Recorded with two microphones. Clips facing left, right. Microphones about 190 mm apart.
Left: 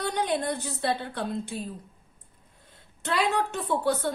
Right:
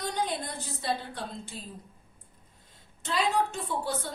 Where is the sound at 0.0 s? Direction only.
65° left (ahead or behind).